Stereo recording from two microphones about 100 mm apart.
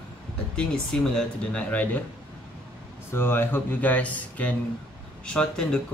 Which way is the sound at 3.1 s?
20° left (ahead or behind).